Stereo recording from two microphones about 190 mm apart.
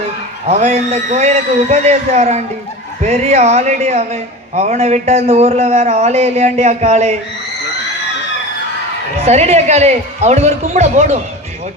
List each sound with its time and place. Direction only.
0.4 s speech: 35° right (ahead or behind)
9.1 s speech: 35° right (ahead or behind)